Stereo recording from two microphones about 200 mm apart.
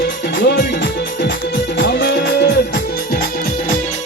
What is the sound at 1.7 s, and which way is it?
Music, 60° left (ahead or behind).